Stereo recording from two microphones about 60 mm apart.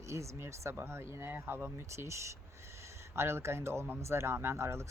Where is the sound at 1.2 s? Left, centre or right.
Right.